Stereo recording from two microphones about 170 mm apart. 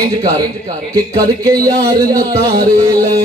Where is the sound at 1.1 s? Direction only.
20° right (ahead or behind).